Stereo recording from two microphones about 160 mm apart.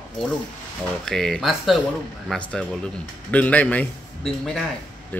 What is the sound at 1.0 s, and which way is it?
Speech, centre (ahead or behind).